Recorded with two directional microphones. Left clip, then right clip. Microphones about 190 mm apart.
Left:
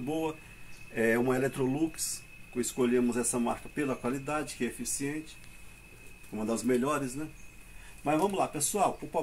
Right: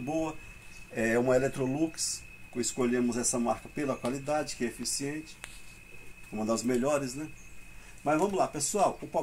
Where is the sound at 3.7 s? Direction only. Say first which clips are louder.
Even; 15° right (ahead or behind).